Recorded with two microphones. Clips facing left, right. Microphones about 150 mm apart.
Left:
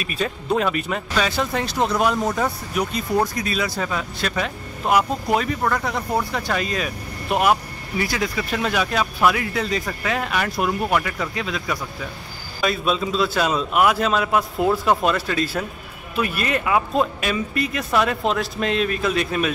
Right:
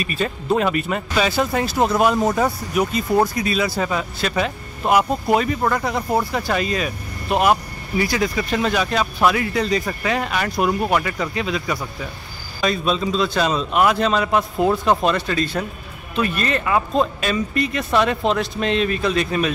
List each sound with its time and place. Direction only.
0.0 s speech: centre (ahead or behind)